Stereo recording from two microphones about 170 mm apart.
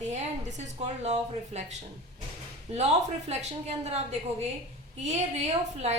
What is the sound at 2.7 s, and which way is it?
Speech, 40° right (ahead or behind).